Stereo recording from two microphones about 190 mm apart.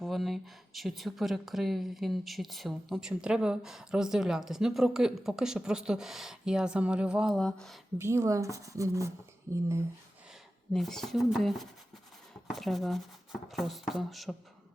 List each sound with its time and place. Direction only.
0.0 s speech: centre (ahead or behind)
7.9 s speech: 15° right (ahead or behind)
10.7 s speech: centre (ahead or behind)